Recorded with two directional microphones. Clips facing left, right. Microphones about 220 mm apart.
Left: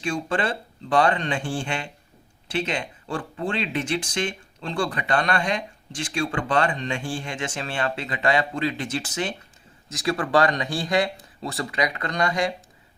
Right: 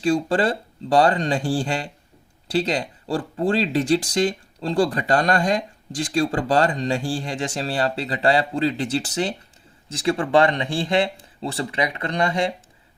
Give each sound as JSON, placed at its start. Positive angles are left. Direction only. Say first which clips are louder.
{"t": 0.0, "sound": "speech", "louder": "right 6 dB", "side_deg": -35}